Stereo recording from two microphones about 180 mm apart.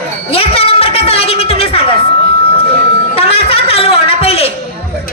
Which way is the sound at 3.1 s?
35° left (ahead or behind).